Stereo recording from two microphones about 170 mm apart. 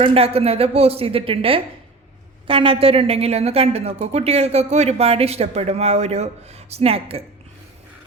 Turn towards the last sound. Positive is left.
turn(degrees=-35)  # may be behind; listen again after turning